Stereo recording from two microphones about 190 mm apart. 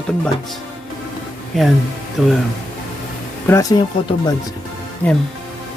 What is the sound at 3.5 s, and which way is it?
Speech, 20° left (ahead or behind).